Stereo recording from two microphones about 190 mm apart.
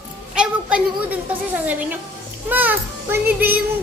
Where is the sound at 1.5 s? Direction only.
10° right (ahead or behind).